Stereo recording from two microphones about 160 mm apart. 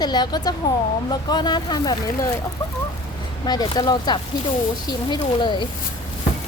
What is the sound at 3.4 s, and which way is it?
Speech, 25° left (ahead or behind).